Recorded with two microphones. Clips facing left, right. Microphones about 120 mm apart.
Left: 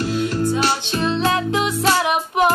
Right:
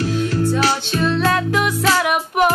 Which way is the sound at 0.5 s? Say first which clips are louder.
Right 1 dB; 20° left (ahead or behind).